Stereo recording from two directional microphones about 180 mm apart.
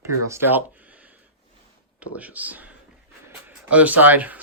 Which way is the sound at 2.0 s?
10° right (ahead or behind).